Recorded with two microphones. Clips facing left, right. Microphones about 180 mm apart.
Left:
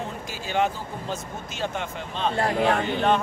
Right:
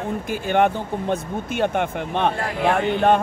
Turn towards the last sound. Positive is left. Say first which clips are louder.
# right 5 dB
turn(degrees=-50)  # may be behind; listen again after turning